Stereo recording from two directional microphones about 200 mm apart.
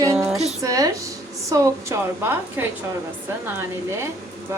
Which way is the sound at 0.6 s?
15° right (ahead or behind).